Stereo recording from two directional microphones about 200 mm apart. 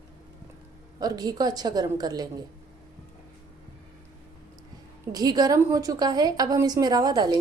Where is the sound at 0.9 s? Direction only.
20° right (ahead or behind).